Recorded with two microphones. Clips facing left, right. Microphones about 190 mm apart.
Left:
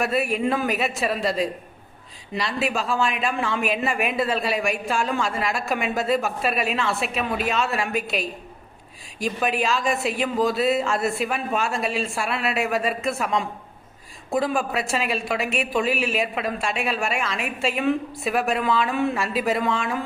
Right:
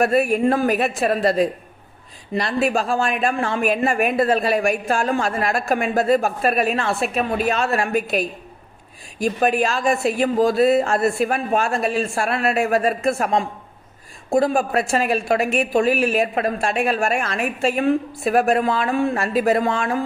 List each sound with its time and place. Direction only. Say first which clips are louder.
0.0 s a woman's voice: right 6 dB; 50° right (ahead or behind)